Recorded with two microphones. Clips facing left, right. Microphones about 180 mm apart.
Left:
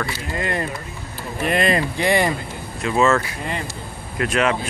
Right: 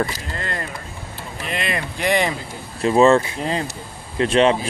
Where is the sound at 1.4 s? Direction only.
55° left (ahead or behind).